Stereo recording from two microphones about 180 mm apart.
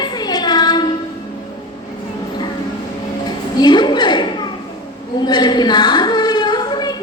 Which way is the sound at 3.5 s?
25° left (ahead or behind).